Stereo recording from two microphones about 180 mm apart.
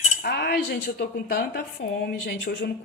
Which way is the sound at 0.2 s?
60° left (ahead or behind).